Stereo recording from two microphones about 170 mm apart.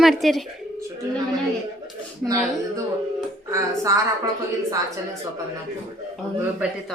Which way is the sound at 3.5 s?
20° right (ahead or behind).